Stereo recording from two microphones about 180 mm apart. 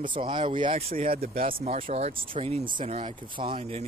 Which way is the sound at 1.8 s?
35° right (ahead or behind).